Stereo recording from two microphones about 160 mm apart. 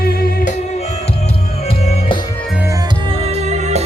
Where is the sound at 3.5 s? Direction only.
45° right (ahead or behind).